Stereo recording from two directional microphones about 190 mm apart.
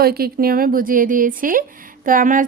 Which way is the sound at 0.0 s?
55° right (ahead or behind).